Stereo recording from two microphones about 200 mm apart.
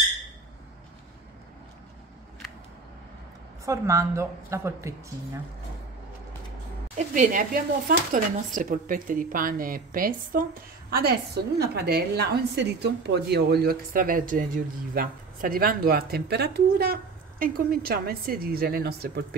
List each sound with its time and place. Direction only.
3.6 s a woman's voice: 15° right (ahead or behind)
7.0 s a woman's voice: 40° right (ahead or behind)